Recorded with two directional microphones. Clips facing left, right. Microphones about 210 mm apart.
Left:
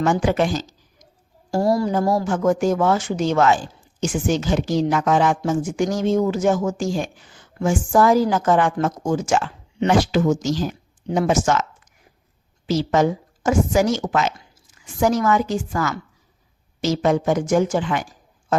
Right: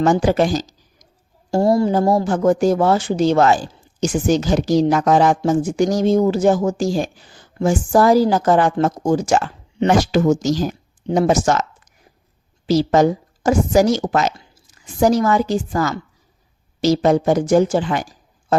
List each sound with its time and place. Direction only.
0.0 s a woman's voice: 40° right (ahead or behind)
1.5 s a woman's voice: 25° right (ahead or behind)
12.6 s a woman's voice: 35° right (ahead or behind)